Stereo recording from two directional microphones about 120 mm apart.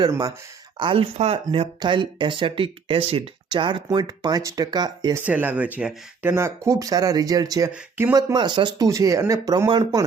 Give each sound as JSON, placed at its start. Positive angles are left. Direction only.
{"t": 0.1, "sound": "speech", "side_deg": -30}
{"t": 0.8, "sound": "speech", "side_deg": -45}
{"t": 5.2, "sound": "speech", "side_deg": -10}
{"t": 7.7, "sound": "speech", "side_deg": -15}
{"t": 8.1, "sound": "speech", "side_deg": -35}
{"t": 8.9, "sound": "speech", "side_deg": -25}